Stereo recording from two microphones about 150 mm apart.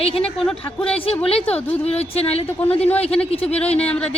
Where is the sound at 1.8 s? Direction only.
45° left (ahead or behind).